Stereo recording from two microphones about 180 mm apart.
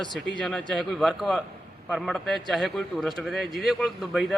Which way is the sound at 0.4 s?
Centre (ahead or behind).